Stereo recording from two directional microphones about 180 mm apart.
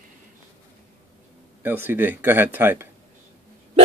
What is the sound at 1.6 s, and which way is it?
Speech, 10° right (ahead or behind).